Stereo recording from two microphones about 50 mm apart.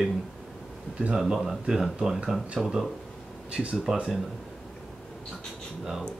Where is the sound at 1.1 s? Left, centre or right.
Centre.